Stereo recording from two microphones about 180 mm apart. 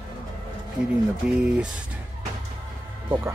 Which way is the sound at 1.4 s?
5° right (ahead or behind).